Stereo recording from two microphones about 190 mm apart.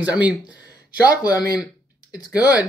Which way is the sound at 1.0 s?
20° left (ahead or behind).